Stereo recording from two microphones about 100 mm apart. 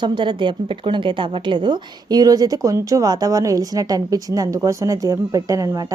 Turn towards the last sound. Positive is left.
turn(degrees=-35)  # may be behind; listen again after turning